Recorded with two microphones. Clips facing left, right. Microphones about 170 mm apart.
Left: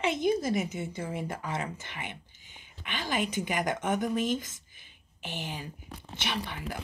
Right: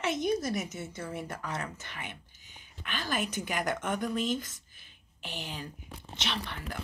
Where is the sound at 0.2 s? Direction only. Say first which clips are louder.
Left 3 dB; 60° left (ahead or behind).